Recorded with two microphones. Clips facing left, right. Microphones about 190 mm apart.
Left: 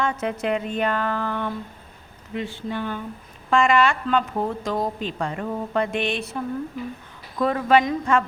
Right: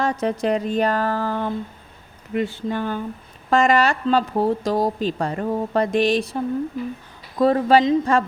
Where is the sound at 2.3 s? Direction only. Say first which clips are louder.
Right 5 dB; 45° right (ahead or behind).